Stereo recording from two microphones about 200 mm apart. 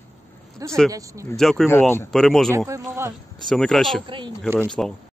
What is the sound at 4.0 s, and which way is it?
Speech, 25° right (ahead or behind).